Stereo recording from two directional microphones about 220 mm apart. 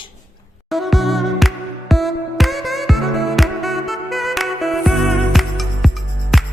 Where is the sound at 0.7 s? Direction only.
Centre (ahead or behind).